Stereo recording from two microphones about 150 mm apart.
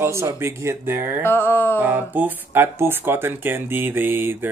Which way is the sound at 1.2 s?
15° left (ahead or behind).